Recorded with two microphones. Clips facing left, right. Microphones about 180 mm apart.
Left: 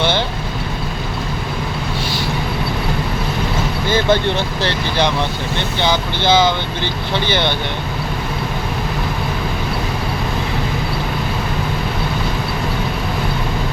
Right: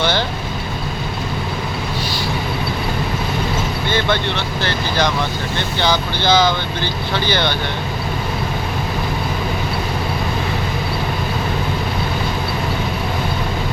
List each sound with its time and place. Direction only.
4.1 s speech: 40° left (ahead or behind)
6.2 s speech: 25° left (ahead or behind)